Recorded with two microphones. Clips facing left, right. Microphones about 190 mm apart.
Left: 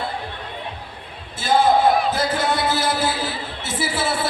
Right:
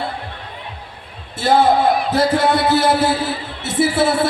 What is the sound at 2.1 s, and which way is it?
Music, 65° right (ahead or behind).